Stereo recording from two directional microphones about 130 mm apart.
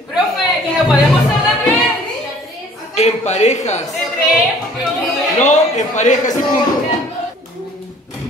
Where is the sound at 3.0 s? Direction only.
60° left (ahead or behind).